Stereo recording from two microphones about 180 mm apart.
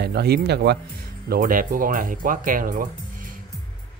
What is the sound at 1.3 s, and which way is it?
Speech, 50° right (ahead or behind).